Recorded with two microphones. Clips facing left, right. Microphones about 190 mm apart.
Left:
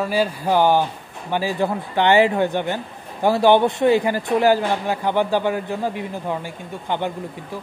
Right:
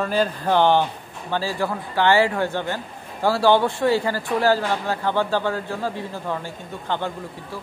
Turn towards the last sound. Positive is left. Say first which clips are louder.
# left 3 dB
turn(degrees=15)  # may be behind; listen again after turning